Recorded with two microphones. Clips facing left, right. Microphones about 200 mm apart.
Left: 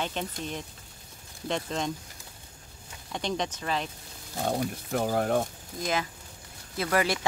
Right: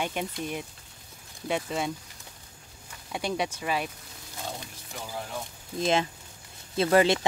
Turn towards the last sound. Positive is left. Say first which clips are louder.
# right 5 dB
turn(degrees=-25)  # may be behind; listen again after turning